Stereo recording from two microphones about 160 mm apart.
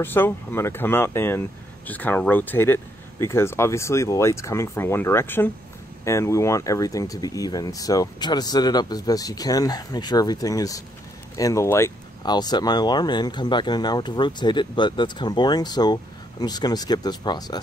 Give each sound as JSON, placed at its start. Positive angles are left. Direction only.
{"t": 0.0, "sound": "speech", "side_deg": 15}